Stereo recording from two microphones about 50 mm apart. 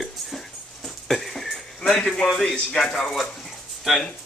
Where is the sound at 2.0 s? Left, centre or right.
Centre.